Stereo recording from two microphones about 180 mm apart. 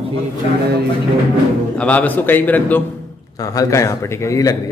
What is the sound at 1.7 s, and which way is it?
A man's voice, 5° left (ahead or behind).